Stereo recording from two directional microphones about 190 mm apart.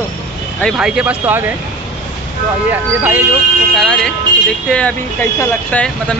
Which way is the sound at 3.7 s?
5° left (ahead or behind).